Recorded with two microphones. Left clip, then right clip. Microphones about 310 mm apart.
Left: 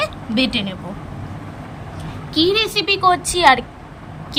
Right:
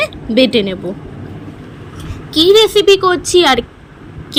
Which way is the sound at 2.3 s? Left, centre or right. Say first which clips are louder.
Right 8 dB; centre.